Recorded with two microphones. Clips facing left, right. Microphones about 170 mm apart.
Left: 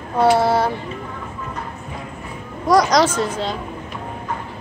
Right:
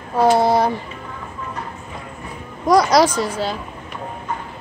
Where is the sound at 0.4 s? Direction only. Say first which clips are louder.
Right 1 dB; 15° right (ahead or behind).